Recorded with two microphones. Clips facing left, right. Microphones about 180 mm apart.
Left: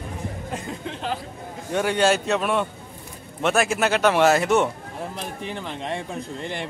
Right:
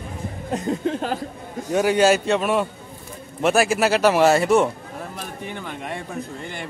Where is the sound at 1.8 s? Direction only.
10° right (ahead or behind).